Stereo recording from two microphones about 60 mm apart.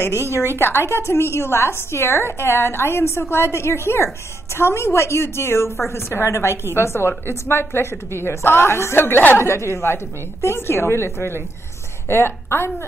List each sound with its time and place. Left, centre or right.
0.6 s a woman's voice: left
5.7 s a woman's voice: centre
5.9 s a woman's voice: left
9.4 s a woman's voice: left